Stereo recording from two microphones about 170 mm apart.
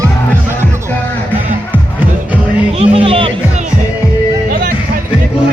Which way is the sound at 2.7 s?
35° right (ahead or behind).